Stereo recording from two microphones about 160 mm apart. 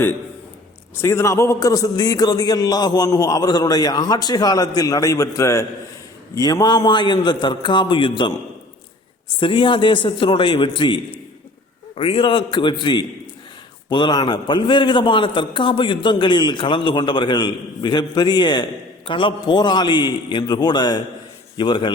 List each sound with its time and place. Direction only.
0.9 s a man's voice: 15° left (ahead or behind)
9.4 s a man's voice: 30° left (ahead or behind)